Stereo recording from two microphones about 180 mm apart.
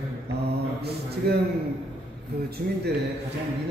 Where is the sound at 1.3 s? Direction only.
65° right (ahead or behind).